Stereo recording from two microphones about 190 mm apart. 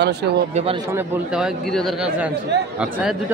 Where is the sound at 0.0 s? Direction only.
60° right (ahead or behind).